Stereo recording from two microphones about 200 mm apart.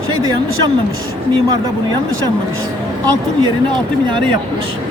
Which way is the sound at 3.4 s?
25° right (ahead or behind).